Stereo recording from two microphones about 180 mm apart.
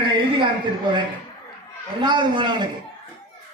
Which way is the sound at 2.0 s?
25° right (ahead or behind).